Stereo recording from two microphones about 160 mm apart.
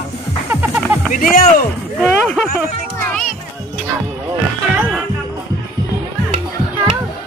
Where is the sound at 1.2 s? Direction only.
60° left (ahead or behind).